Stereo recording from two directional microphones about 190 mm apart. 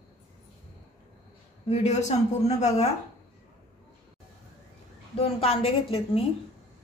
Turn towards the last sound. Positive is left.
turn(degrees=30)  # may be behind; listen again after turning